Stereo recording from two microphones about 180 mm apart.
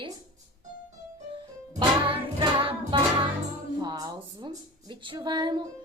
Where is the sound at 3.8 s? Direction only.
20° right (ahead or behind).